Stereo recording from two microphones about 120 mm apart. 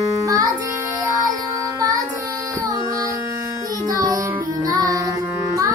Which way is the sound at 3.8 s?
30° right (ahead or behind).